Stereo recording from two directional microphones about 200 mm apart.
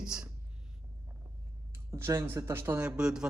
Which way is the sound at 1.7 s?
15° right (ahead or behind).